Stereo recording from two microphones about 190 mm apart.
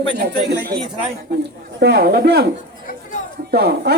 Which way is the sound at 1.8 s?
60° right (ahead or behind).